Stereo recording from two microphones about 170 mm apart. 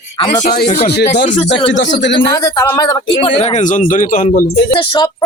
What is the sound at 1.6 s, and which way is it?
Speech, 90° left.